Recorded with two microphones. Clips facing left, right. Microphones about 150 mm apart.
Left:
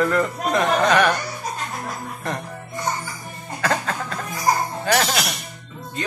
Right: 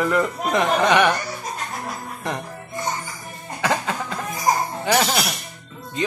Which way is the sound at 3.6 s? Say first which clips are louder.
Even; 15° right (ahead or behind).